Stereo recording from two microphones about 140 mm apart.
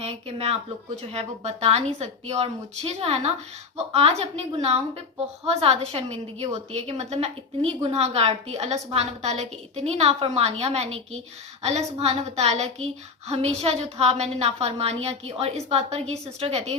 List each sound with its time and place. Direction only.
0.0 s a woman's voice: 50° right (ahead or behind)
5.5 s a woman's voice: 45° right (ahead or behind)